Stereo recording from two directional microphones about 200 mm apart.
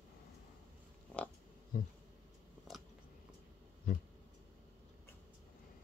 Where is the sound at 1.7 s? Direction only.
45° left (ahead or behind).